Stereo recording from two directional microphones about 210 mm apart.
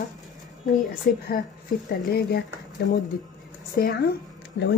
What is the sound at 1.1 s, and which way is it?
A woman's voice, 45° left (ahead or behind).